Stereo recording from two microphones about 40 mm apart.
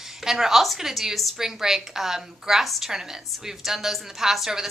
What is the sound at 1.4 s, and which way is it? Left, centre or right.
A woman's voice, centre.